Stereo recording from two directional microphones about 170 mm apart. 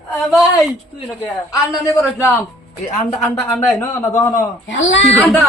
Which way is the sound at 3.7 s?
15° left (ahead or behind).